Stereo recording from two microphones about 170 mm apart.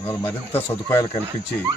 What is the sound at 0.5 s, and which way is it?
Speech, 35° left (ahead or behind).